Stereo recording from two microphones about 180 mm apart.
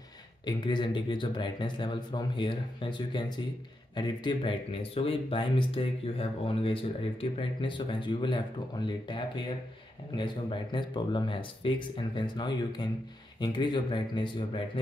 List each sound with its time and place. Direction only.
0.5 s speech: 25° left (ahead or behind)